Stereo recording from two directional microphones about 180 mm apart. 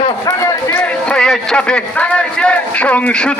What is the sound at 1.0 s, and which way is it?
A man's voice, 5° left (ahead or behind).